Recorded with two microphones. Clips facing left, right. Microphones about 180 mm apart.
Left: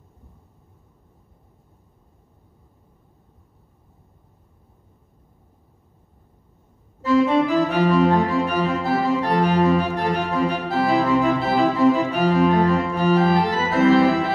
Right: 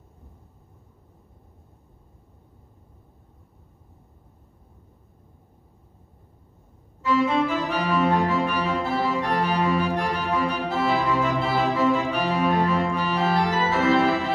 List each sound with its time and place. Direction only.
7.0 s organ: 40° left (ahead or behind)